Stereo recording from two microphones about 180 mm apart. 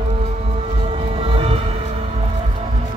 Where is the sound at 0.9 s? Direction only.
30° right (ahead or behind).